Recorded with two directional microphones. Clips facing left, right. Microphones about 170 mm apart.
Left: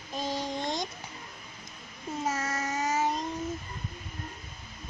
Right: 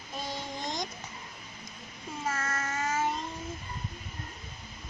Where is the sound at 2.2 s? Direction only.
15° left (ahead or behind).